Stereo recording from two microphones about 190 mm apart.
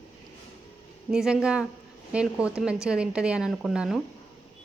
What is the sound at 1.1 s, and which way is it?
Speech, 5° right (ahead or behind).